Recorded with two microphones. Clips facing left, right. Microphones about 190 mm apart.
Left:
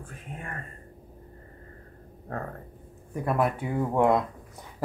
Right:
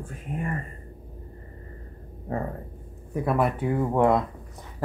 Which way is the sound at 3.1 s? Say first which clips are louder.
Right 2 dB; 5° right (ahead or behind).